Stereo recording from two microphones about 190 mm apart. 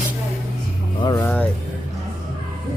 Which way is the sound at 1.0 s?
20° left (ahead or behind).